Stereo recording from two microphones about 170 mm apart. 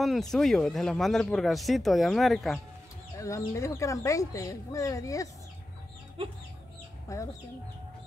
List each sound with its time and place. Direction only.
0.0 s speech: centre (ahead or behind)
3.2 s speech: 20° left (ahead or behind)
7.1 s speech: 20° left (ahead or behind)